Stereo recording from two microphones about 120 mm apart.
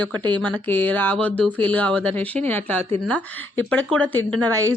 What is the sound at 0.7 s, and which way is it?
Speech, 15° left (ahead or behind).